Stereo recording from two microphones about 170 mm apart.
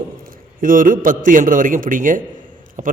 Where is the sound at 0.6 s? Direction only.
50° right (ahead or behind).